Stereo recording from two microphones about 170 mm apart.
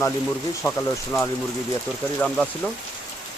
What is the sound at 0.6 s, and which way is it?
Speech, 15° left (ahead or behind).